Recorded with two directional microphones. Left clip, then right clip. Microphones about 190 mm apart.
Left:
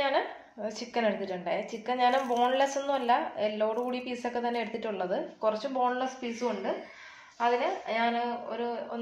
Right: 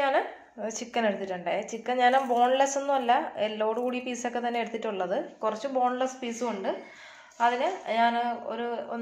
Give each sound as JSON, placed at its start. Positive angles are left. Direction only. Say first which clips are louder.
{"t": 0.0, "sound": "a woman's voice", "louder": "right 2 dB", "side_deg": -25}